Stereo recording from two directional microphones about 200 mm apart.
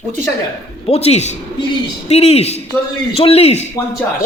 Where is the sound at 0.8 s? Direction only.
30° left (ahead or behind).